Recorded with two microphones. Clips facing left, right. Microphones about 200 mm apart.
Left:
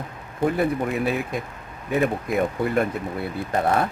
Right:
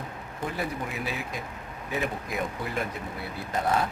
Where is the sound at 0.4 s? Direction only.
55° left (ahead or behind).